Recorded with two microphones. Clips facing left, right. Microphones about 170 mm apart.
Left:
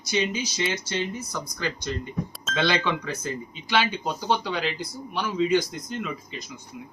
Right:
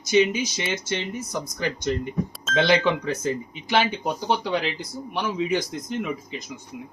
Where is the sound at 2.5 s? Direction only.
Centre (ahead or behind).